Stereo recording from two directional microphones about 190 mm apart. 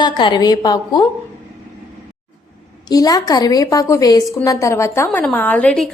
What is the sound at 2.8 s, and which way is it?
A woman's voice, 20° left (ahead or behind).